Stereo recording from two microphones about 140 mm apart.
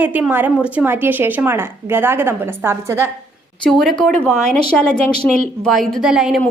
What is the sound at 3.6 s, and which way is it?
Speech, 5° left (ahead or behind).